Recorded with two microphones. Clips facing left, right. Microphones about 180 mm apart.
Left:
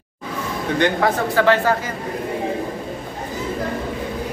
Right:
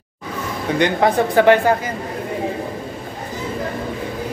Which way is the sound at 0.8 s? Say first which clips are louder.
Right 3 dB; 20° right (ahead or behind).